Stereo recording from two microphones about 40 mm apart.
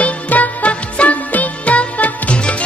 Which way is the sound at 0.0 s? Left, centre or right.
Left.